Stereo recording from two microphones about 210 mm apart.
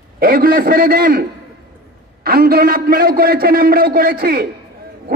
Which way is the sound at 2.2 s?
45° right (ahead or behind).